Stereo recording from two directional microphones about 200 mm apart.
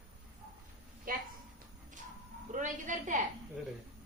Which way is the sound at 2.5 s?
40° right (ahead or behind).